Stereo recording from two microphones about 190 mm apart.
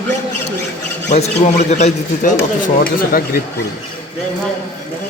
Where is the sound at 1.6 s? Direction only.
35° left (ahead or behind).